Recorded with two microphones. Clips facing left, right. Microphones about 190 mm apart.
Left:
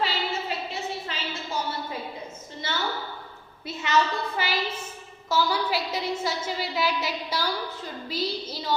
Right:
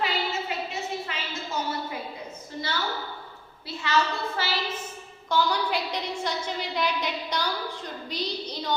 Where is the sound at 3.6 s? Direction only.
20° left (ahead or behind).